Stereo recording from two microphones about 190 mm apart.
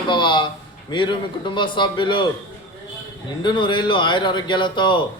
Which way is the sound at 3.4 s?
25° left (ahead or behind).